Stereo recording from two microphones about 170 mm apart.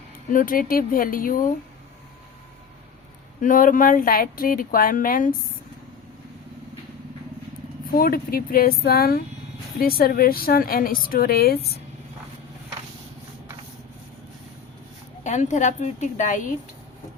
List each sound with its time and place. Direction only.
0.3 s a woman's voice: 55° left (ahead or behind)
3.4 s a woman's voice: 50° left (ahead or behind)
7.9 s a woman's voice: 60° left (ahead or behind)
15.2 s a woman's voice: 45° left (ahead or behind)